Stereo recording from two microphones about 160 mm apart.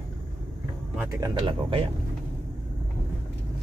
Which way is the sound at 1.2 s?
30° right (ahead or behind).